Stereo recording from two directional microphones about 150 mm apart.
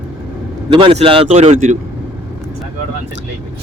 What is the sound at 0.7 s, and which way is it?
Speech, 35° right (ahead or behind).